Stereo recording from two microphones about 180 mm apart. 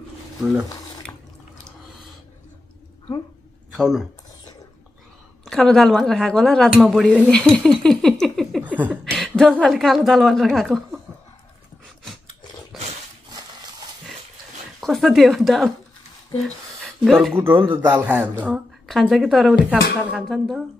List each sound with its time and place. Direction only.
0.4 s speech: 5° right (ahead or behind)
3.7 s speech: centre (ahead or behind)
5.4 s speech: 5° left (ahead or behind)
9.0 s speech: centre (ahead or behind)
13.3 s a sound: 20° right (ahead or behind)
14.8 s speech: centre (ahead or behind)
16.8 s a sound: centre (ahead or behind)
17.6 s a woman's voice: 15° right (ahead or behind)